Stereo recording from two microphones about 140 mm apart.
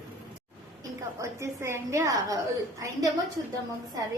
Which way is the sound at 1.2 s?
20° right (ahead or behind).